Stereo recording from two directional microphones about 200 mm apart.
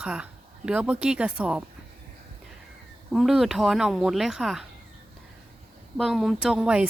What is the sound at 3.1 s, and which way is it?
Speech, centre (ahead or behind).